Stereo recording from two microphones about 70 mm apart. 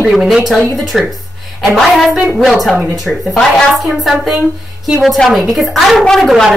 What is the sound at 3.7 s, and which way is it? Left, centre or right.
Speech, centre.